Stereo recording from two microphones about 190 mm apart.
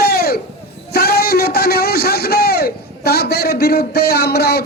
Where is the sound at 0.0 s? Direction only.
55° left (ahead or behind).